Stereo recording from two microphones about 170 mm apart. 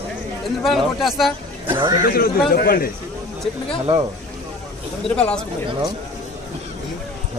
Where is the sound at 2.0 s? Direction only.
60° left (ahead or behind).